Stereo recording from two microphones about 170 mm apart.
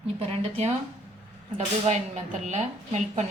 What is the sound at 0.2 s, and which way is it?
A woman's voice, 35° right (ahead or behind).